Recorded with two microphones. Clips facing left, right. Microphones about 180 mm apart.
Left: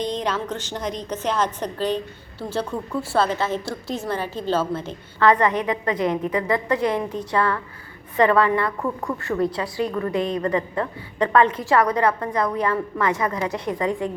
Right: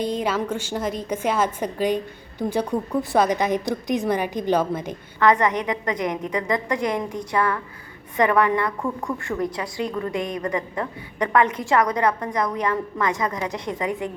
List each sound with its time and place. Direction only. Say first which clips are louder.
0.0 s a woman's voice: right 1 dB; 10° right (ahead or behind)